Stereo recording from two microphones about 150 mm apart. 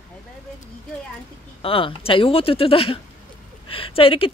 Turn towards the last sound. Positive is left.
turn(degrees=40)  # may be behind; listen again after turning